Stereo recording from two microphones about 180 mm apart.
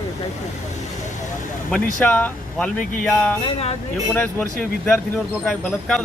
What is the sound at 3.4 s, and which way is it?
Speech, 35° left (ahead or behind).